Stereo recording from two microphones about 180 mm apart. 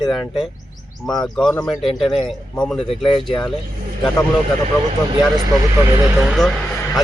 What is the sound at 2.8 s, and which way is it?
Speech, 30° left (ahead or behind).